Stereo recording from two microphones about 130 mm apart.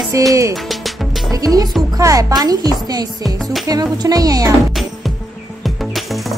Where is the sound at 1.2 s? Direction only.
30° right (ahead or behind).